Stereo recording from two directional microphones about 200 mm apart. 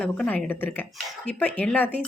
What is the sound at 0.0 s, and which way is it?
Speech, 5° left (ahead or behind).